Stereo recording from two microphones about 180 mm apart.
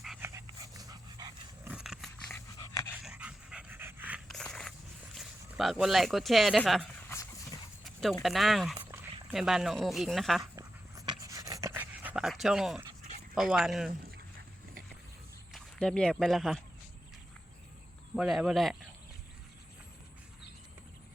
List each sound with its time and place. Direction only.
0.2 s dog: 15° right (ahead or behind)
1.7 s dog: centre (ahead or behind)
2.3 s dog: 20° left (ahead or behind)
3.0 s dog: 5° right (ahead or behind)
5.1 s speech: centre (ahead or behind)
8.2 s speech: centre (ahead or behind)
10.5 s dog: 20° right (ahead or behind); by 12.8 s centre (ahead or behind)
13.3 s speech: centre (ahead or behind)
15.5 s speech: 5° left (ahead or behind)
18.1 s speech: centre (ahead or behind)